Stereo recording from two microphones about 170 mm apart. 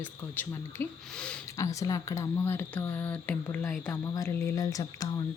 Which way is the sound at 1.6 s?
20° left (ahead or behind).